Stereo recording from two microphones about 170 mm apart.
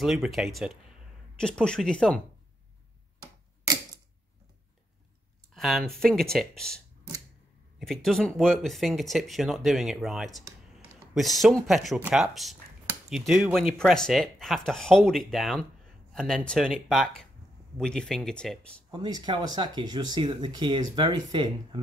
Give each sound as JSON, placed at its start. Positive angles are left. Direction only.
{"t": 0.0, "sound": "speech", "side_deg": 0}
{"t": 5.5, "sound": "speech", "side_deg": 0}
{"t": 7.8, "sound": "a man's voice", "side_deg": 0}
{"t": 18.9, "sound": "speech", "side_deg": -25}